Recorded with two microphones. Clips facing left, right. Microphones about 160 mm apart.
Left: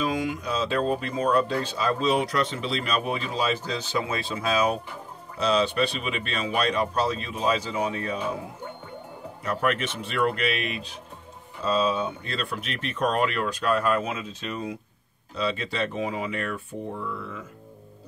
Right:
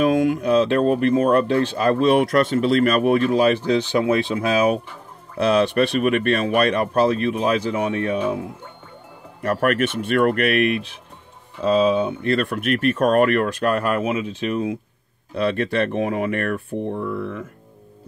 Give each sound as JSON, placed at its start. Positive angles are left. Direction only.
{"t": 0.0, "sound": "speech", "side_deg": -60}
{"t": 9.4, "sound": "speech", "side_deg": -60}